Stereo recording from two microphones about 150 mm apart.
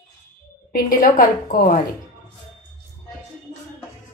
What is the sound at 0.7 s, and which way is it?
A woman's voice, 70° left (ahead or behind).